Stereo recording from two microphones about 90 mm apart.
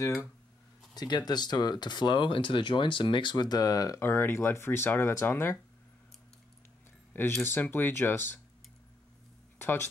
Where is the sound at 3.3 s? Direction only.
50° left (ahead or behind).